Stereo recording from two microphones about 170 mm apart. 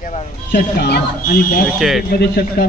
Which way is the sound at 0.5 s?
80° left.